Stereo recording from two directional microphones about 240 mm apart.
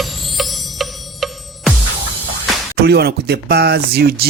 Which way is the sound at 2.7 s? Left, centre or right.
Right.